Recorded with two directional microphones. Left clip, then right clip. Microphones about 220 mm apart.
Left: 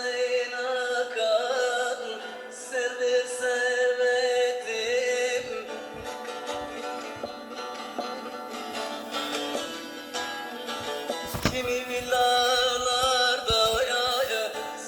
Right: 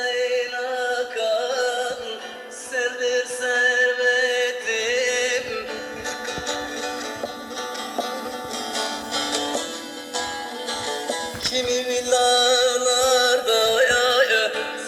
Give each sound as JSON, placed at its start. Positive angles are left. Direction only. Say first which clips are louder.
{"t": 2.7, "sound": "music", "louder": "right 3 dB", "side_deg": -40}
{"t": 8.7, "sound": "music", "louder": "right 6 dB", "side_deg": -35}
{"t": 10.7, "sound": "music", "louder": "right 5 dB", "side_deg": -30}